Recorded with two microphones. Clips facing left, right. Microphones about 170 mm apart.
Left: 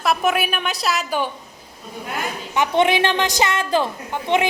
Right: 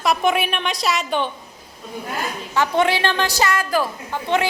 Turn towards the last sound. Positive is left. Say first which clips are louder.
# left 1 dB
turn(degrees=20)  # may be behind; listen again after turning